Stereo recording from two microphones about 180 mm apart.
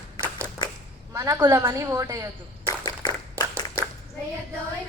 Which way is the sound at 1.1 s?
15° right (ahead or behind).